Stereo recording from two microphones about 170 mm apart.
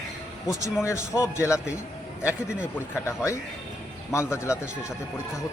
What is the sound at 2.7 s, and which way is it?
A man's voice, 10° left (ahead or behind).